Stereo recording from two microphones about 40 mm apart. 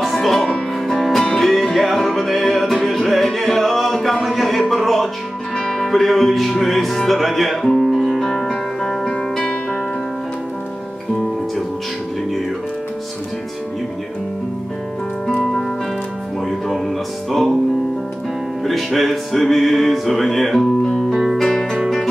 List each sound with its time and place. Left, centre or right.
0.0 s music: centre
8.5 s music: centre
16.4 s music: centre
18.6 s music: centre
21.4 s music: centre